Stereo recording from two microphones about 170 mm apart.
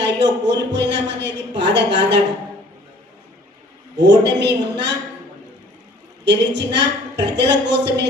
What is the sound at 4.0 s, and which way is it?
Speech, 90° right.